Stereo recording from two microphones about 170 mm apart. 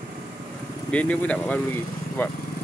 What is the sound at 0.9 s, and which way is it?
Speech, 10° left (ahead or behind).